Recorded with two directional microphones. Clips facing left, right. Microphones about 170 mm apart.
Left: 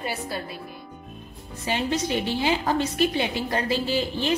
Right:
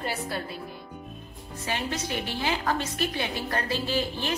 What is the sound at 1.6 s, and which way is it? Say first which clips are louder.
A woman's voice: left 6 dB; 20° left (ahead or behind).